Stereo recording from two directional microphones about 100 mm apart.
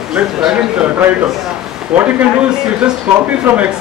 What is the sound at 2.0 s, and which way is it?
Speech, 10° right (ahead or behind).